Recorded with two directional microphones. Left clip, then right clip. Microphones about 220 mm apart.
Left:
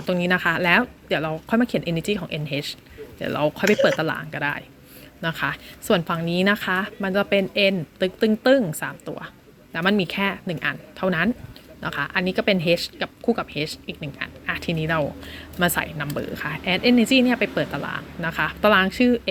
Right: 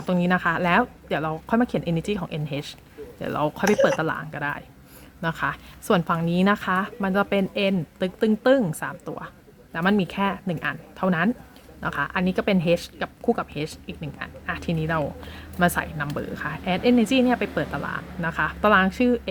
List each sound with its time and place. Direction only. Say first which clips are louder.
0.0 s a woman's voice: left 2 dB; 5° right (ahead or behind)